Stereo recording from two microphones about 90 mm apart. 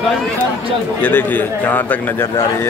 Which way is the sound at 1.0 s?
20° left (ahead or behind).